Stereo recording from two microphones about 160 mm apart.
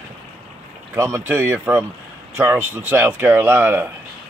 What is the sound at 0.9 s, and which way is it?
Speech, 15° right (ahead or behind).